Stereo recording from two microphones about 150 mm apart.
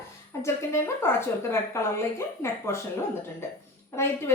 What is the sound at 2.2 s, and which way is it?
Speech, 20° left (ahead or behind).